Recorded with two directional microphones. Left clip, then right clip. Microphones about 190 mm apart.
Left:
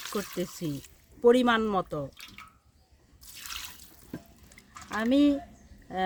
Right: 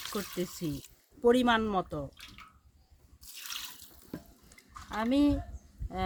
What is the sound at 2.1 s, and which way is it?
Bathtub, 50° left (ahead or behind).